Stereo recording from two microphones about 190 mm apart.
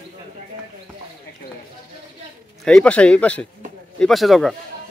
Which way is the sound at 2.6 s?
5° left (ahead or behind).